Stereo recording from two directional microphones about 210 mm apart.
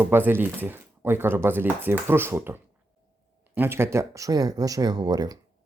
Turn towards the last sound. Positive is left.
turn(degrees=-20)  # may be behind; listen again after turning